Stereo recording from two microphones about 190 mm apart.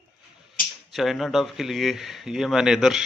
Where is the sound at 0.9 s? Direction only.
Centre (ahead or behind).